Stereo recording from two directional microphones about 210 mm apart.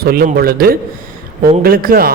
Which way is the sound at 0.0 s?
45° right (ahead or behind).